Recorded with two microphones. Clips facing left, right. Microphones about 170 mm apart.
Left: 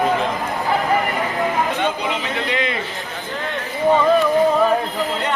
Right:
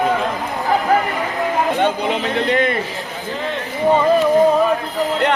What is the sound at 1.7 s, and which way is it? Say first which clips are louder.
Speech: right 4 dB; 50° right (ahead or behind).